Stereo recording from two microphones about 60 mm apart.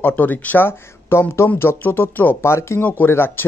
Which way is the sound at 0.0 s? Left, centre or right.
Left.